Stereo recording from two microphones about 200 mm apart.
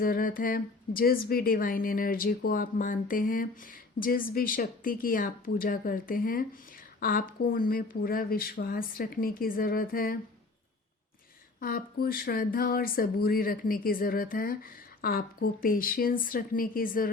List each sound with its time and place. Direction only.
0.0 s a woman's voice: 45° left (ahead or behind)
11.6 s a woman's voice: 45° left (ahead or behind)